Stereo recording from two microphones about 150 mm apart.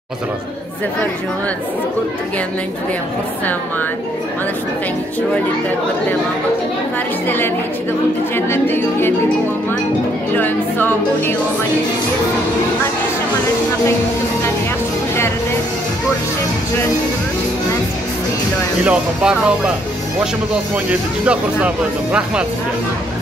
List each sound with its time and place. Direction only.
7.2 s speech: 15° left (ahead or behind)
10.3 s speech: 15° left (ahead or behind)
18.9 s speech: 10° right (ahead or behind)
20.9 s speech: 10° right (ahead or behind)